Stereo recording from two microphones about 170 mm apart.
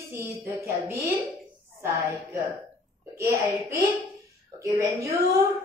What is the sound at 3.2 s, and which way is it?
A woman's voice, 15° right (ahead or behind).